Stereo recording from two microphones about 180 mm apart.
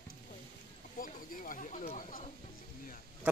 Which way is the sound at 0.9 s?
50° left (ahead or behind).